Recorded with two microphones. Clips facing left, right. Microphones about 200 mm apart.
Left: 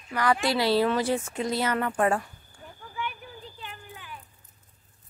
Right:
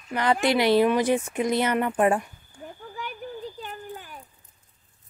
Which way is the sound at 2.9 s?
40° right (ahead or behind).